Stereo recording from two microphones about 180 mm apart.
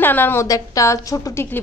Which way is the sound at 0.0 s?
10° left (ahead or behind).